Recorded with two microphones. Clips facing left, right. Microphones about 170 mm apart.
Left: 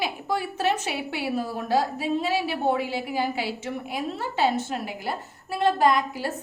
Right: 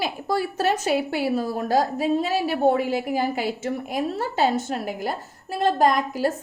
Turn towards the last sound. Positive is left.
turn(degrees=-45)  # may be behind; listen again after turning